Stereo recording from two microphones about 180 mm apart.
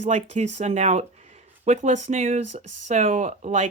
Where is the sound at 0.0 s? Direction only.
40° right (ahead or behind).